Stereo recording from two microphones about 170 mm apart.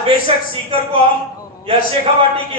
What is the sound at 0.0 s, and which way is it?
Speech, 35° right (ahead or behind).